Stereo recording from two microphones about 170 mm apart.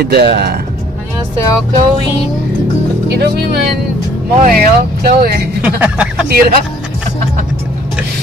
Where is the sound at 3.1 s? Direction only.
70° right (ahead or behind).